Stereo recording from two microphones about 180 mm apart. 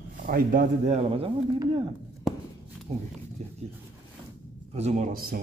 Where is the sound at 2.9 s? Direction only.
35° right (ahead or behind).